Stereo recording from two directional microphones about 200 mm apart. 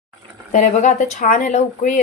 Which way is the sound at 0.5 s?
40° left (ahead or behind).